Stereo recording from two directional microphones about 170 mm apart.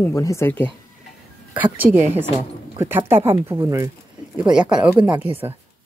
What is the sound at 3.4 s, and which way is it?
A woman's voice, 15° right (ahead or behind).